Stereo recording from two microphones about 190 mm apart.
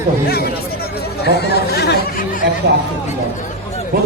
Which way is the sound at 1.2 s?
60° left (ahead or behind).